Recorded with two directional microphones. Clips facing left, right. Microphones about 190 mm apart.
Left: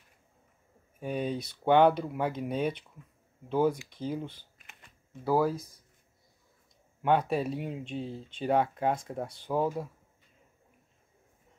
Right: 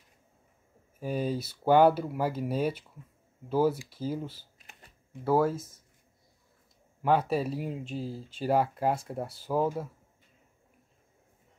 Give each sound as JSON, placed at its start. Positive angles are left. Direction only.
{"t": 0.9, "sound": "speech", "side_deg": -5}
{"t": 4.6, "sound": "shuffling cards", "side_deg": -35}
{"t": 5.2, "sound": "speech", "side_deg": 0}
{"t": 7.0, "sound": "speech", "side_deg": 0}